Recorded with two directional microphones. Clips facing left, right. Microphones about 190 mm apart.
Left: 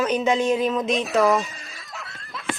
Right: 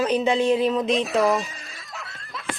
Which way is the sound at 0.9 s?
Centre (ahead or behind).